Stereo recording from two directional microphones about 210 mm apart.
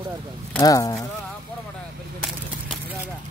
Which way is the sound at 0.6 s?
15° left (ahead or behind).